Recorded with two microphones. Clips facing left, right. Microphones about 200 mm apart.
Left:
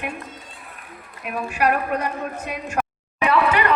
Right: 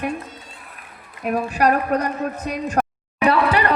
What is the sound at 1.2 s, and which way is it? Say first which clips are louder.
A woman's voice: right 4 dB; 40° right (ahead or behind).